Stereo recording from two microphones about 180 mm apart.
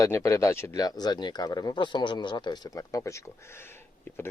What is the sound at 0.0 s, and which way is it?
Speech, 15° left (ahead or behind).